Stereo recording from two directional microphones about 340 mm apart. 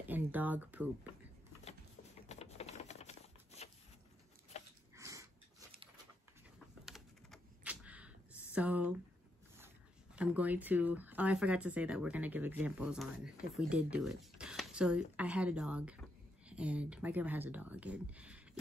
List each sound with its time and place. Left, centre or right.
0.0 s speech: centre
2.2 s typewriter: centre
4.5 s biting: centre
4.9 s dog: centre
6.9 s computer keyboard: centre
8.5 s speech: centre
10.1 s speech: centre